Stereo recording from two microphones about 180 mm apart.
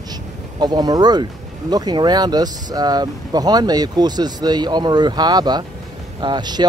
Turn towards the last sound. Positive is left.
turn(degrees=-25)  # may be behind; listen again after turning